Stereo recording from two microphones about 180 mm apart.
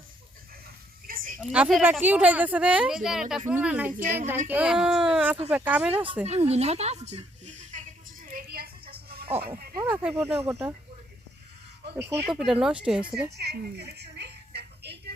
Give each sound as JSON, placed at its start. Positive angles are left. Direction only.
{"t": 1.0, "sound": "a sound", "side_deg": -50}
{"t": 1.5, "sound": "speech", "side_deg": -5}
{"t": 3.9, "sound": "speech", "side_deg": -45}
{"t": 4.3, "sound": "speech", "side_deg": -10}
{"t": 6.2, "sound": "a sound", "side_deg": -35}
{"t": 9.9, "sound": "speech", "side_deg": -10}
{"t": 12.3, "sound": "speech", "side_deg": -5}
{"t": 13.3, "sound": "music", "side_deg": -65}